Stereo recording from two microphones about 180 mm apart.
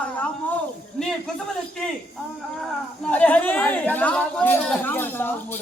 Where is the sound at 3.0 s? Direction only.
10° left (ahead or behind).